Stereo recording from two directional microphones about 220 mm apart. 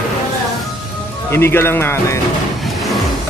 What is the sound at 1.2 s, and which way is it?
Speech, 10° left (ahead or behind).